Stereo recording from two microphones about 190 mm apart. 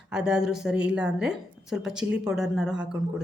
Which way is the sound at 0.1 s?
5° right (ahead or behind).